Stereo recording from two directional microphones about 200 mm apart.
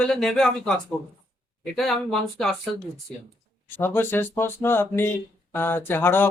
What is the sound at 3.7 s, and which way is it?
Speech, 10° left (ahead or behind).